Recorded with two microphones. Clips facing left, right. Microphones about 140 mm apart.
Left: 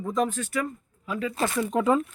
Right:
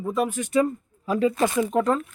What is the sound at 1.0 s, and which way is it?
Speech, 30° right (ahead or behind).